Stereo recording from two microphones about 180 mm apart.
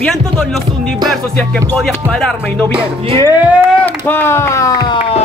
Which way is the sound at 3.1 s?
25° right (ahead or behind).